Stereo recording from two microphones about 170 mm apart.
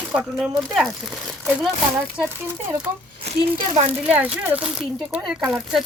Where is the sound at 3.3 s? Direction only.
40° right (ahead or behind).